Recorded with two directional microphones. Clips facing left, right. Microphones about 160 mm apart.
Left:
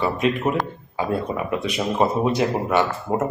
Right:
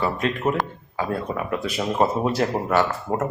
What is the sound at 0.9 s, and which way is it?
Speech, 20° left (ahead or behind).